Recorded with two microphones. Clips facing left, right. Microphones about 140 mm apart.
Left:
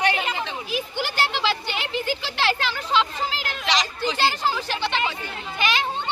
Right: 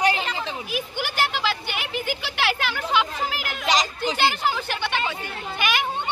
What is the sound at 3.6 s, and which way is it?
Speech, 45° right (ahead or behind).